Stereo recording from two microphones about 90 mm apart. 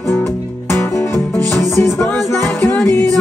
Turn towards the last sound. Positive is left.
turn(degrees=25)  # may be behind; listen again after turning